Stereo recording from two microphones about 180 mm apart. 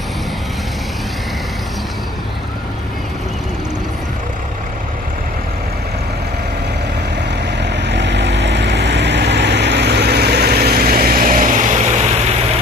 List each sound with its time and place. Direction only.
7.5 s vehicle: 70° right (ahead or behind); by 12.1 s 40° right (ahead or behind)